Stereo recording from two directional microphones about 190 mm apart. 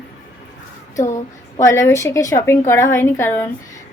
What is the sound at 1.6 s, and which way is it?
A woman's voice, 15° left (ahead or behind).